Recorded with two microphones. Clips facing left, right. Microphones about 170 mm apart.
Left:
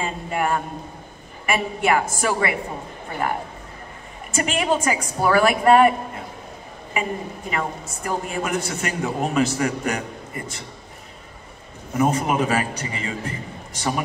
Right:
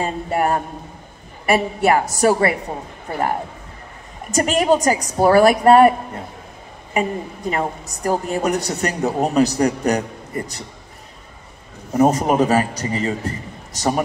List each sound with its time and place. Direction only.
0.0 s a woman's voice: 40° right (ahead or behind)
11.9 s a woman's voice: 40° right (ahead or behind)